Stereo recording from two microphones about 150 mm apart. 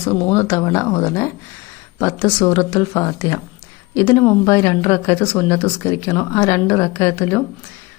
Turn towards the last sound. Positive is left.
turn(degrees=15)  # may be behind; listen again after turning